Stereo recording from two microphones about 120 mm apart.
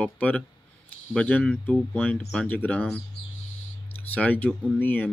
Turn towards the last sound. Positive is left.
turn(degrees=15)  # may be behind; listen again after turning